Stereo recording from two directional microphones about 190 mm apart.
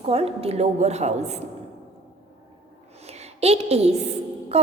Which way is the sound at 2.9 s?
35° right (ahead or behind).